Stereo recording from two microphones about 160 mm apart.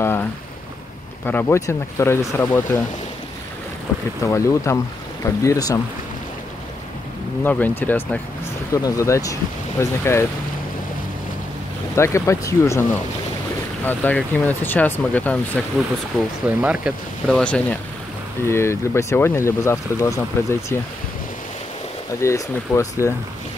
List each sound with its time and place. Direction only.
0.0 s boat: 15° left (ahead or behind)
1.2 s speech: 15° left (ahead or behind)
4.3 s speech: 20° left (ahead or behind)
7.4 s speech: 10° left (ahead or behind)
11.9 s speech: 15° left (ahead or behind)
13.8 s speech: 10° left (ahead or behind)
16.4 s speech: 10° right (ahead or behind)
17.3 s speech: 5° left (ahead or behind)
22.2 s speech: 20° left (ahead or behind)